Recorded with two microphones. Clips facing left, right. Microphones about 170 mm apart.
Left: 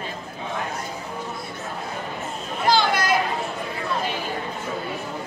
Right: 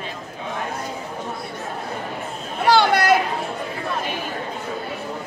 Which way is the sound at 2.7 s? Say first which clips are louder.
Right 4 dB; 70° right (ahead or behind).